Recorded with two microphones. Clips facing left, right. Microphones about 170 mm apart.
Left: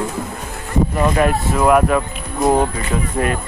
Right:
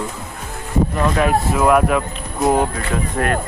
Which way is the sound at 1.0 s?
Centre (ahead or behind).